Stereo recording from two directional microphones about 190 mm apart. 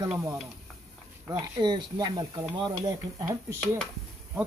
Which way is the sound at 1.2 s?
20° right (ahead or behind).